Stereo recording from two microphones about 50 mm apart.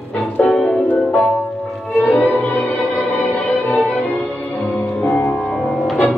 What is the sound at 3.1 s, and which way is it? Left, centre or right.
Music, left.